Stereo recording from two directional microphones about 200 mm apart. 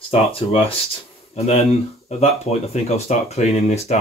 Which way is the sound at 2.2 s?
35° left (ahead or behind).